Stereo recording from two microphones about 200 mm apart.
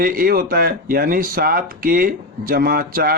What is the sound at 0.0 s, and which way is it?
Speech, 45° right (ahead or behind).